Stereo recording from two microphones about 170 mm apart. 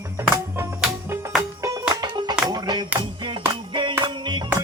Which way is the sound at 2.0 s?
25° right (ahead or behind).